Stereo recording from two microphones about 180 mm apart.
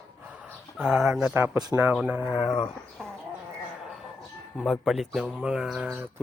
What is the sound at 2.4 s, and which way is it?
Mantra, 25° left (ahead or behind).